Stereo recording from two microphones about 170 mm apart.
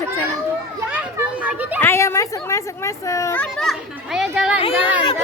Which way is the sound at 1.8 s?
15° left (ahead or behind).